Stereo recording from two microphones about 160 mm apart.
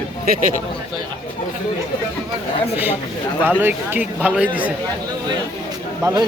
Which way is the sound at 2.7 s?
10° right (ahead or behind).